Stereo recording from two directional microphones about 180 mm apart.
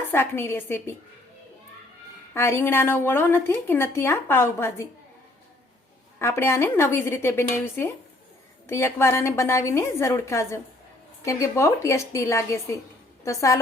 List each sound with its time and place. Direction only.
0.1 s a woman's voice: 10° left (ahead or behind)
2.3 s a woman's voice: 15° left (ahead or behind)
6.1 s a woman's voice: 15° left (ahead or behind)